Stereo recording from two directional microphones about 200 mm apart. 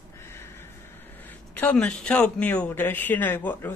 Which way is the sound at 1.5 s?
10° left (ahead or behind).